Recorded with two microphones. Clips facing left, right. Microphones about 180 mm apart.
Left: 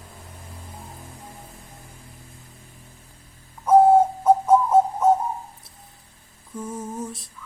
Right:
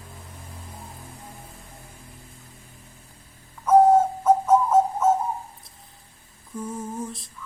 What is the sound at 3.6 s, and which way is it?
Bird, 30° left (ahead or behind).